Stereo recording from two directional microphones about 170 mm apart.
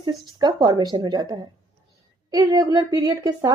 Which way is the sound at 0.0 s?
25° right (ahead or behind).